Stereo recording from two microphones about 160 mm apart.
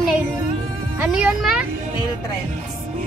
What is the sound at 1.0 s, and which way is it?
Music, 5° right (ahead or behind).